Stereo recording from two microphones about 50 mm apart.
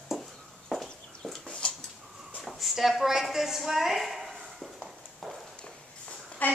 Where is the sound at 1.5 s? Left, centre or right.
Centre.